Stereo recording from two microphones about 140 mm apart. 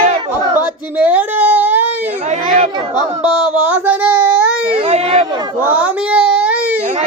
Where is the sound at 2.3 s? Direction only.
55° right (ahead or behind).